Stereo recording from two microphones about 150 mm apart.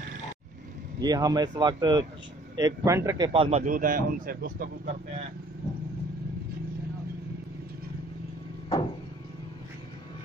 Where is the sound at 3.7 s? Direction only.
70° right (ahead or behind).